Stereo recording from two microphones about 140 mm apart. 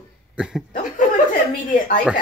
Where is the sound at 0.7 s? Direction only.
70° left (ahead or behind).